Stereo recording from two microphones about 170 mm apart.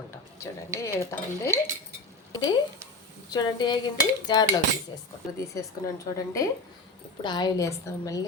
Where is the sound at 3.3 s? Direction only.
25° left (ahead or behind).